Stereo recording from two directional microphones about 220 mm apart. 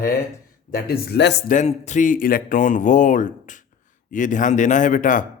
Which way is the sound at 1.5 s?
30° left (ahead or behind).